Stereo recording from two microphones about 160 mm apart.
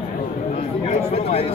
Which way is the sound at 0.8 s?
40° left (ahead or behind).